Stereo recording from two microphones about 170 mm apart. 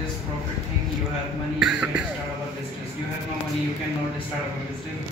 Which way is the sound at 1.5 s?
5° right (ahead or behind).